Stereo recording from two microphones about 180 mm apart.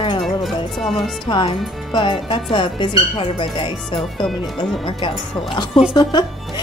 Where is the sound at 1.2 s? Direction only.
25° left (ahead or behind).